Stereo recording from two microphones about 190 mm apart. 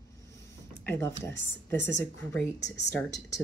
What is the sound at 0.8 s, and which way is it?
Speech, 10° left (ahead or behind).